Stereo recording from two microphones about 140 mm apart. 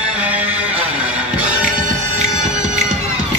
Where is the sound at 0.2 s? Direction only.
10° right (ahead or behind).